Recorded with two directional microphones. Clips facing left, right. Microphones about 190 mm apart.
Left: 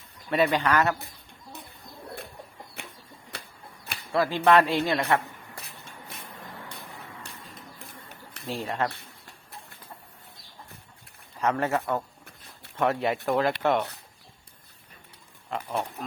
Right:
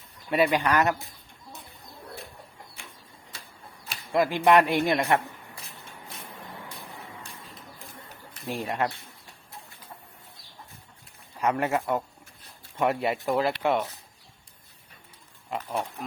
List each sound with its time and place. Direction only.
0.3 s a man's voice: 10° right (ahead or behind)
2.8 s a sound: 65° left (ahead or behind)
3.3 s typewriter: 65° left (ahead or behind)
4.1 s a man's voice: 15° right (ahead or behind)
8.4 s a man's voice: 15° right (ahead or behind)
11.3 s a man's voice: 15° right (ahead or behind)
15.4 s speech: 10° right (ahead or behind)